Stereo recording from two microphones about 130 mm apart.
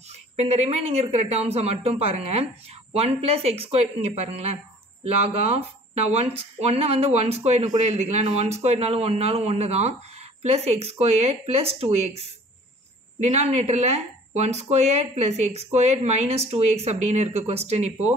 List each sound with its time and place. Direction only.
0.4 s speech: 55° right (ahead or behind)